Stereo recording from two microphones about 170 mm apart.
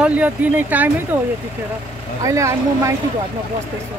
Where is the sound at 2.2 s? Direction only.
20° right (ahead or behind).